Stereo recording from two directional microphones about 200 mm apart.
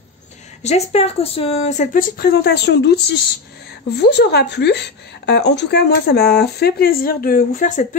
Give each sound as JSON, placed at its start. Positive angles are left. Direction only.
{"t": 0.6, "sound": "a woman's voice", "side_deg": 35}